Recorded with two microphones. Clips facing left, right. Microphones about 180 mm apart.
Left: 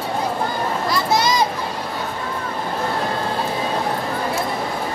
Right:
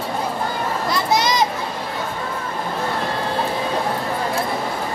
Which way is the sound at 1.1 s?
20° right (ahead or behind).